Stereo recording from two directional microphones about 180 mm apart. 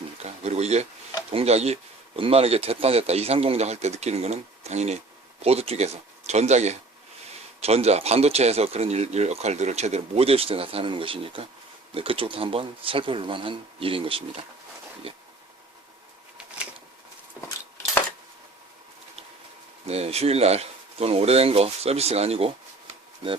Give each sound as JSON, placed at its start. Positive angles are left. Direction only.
{"t": 0.2, "sound": "speech", "side_deg": -35}
{"t": 19.9, "sound": "speech", "side_deg": -35}